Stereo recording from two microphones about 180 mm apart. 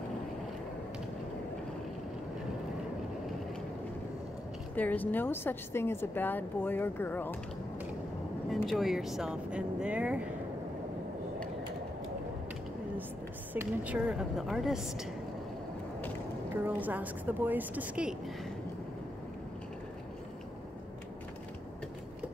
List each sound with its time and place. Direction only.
4.7 s a woman's voice: 10° left (ahead or behind)
8.5 s speech: centre (ahead or behind)
13.5 s speech: 10° right (ahead or behind)
16.6 s a woman's voice: 10° right (ahead or behind)